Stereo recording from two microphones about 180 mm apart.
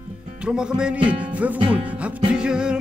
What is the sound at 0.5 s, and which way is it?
Speech, 5° right (ahead or behind).